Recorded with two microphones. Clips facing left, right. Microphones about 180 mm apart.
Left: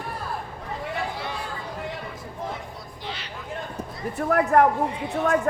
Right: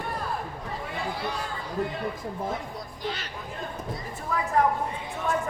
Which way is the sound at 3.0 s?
45° right (ahead or behind).